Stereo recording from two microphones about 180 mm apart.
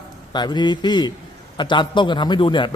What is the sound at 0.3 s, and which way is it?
Speech, 25° left (ahead or behind).